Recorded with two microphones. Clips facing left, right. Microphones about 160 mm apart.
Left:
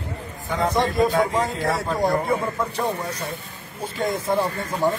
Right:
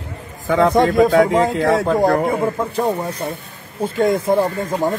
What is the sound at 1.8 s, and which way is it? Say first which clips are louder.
A man's voice: right 7 dB; 50° right (ahead or behind).